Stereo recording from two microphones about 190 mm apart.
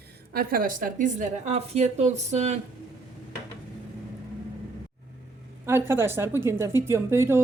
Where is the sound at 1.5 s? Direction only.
35° right (ahead or behind).